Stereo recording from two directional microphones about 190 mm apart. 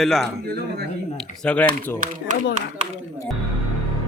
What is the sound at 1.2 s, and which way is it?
Speech, 5° left (ahead or behind).